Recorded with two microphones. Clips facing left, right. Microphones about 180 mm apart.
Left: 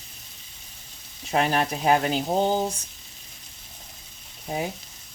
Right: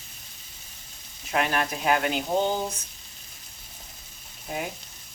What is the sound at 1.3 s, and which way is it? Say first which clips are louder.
Speech: left 3 dB; 30° left (ahead or behind).